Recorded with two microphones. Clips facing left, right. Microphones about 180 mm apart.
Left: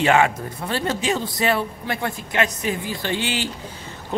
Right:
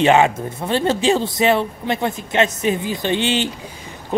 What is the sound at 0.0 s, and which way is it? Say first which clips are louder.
Speech: right 4 dB; 20° right (ahead or behind).